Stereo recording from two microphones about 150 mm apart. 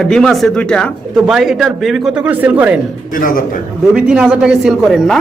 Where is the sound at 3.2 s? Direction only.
65° left (ahead or behind).